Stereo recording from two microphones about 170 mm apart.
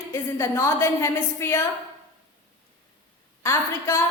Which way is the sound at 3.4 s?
15° left (ahead or behind).